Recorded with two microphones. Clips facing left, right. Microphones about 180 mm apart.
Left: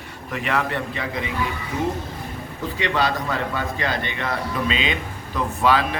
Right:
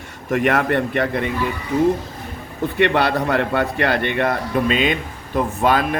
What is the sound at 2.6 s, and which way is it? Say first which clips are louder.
A man's voice: right 6 dB; 60° right (ahead or behind).